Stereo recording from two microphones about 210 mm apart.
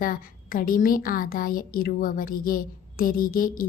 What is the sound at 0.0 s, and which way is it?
A woman's voice, 40° left (ahead or behind).